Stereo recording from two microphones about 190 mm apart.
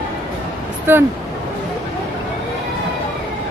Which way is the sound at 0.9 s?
10° right (ahead or behind).